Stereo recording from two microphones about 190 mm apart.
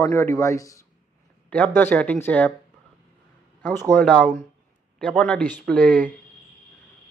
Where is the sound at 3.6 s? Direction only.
10° left (ahead or behind).